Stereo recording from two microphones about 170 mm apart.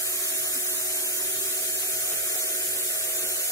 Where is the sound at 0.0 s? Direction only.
20° left (ahead or behind).